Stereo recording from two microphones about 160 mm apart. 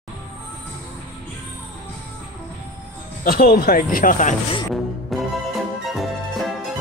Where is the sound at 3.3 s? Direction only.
70° left (ahead or behind); by 4.4 s 55° left (ahead or behind).